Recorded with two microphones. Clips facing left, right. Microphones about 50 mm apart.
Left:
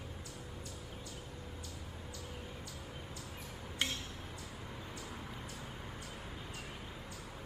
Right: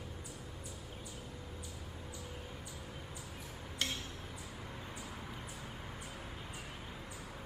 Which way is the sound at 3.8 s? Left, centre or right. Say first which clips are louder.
Left 1 dB; centre.